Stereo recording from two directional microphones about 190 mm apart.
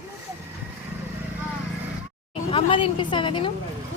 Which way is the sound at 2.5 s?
30° left (ahead or behind).